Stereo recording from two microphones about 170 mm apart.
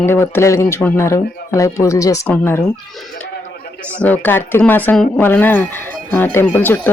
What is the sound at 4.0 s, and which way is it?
Speech, 10° left (ahead or behind).